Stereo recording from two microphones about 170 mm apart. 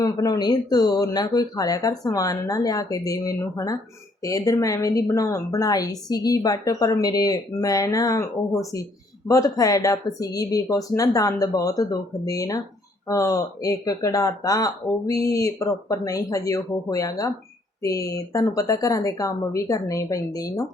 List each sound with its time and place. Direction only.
0.0 s speech: 20° left (ahead or behind)